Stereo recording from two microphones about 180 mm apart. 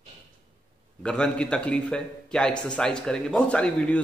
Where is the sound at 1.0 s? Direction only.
5° left (ahead or behind).